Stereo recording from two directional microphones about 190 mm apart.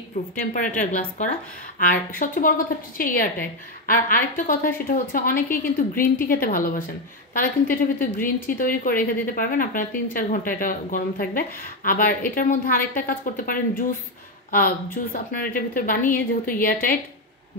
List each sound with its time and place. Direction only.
0.4 s a woman's voice: 45° left (ahead or behind)